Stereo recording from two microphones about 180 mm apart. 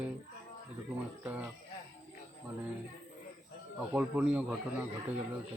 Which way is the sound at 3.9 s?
10° right (ahead or behind).